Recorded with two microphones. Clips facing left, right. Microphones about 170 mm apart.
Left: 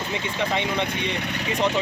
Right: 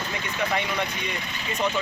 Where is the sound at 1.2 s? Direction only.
70° left (ahead or behind).